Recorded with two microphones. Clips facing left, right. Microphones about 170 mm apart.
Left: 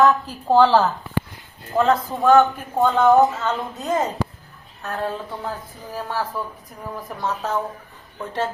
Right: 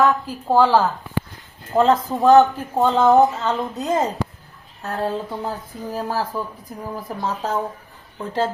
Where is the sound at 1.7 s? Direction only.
30° right (ahead or behind).